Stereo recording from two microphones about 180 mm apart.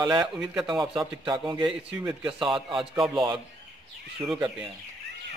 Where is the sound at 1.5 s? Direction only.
25° right (ahead or behind).